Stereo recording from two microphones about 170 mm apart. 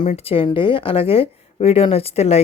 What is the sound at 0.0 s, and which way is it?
Speech, 35° left (ahead or behind).